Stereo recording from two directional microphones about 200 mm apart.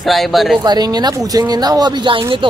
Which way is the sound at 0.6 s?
20° right (ahead or behind).